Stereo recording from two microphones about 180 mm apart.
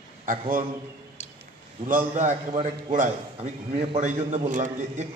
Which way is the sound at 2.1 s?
40° right (ahead or behind).